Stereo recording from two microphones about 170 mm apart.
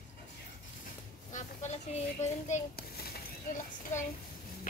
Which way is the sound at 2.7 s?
65° left (ahead or behind).